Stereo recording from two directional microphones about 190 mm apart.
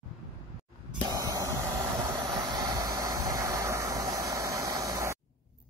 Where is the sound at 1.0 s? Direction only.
15° right (ahead or behind).